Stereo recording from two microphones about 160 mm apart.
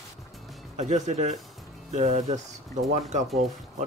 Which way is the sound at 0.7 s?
45° right (ahead or behind).